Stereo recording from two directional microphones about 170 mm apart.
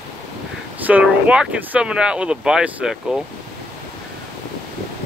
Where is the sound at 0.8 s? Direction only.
10° right (ahead or behind).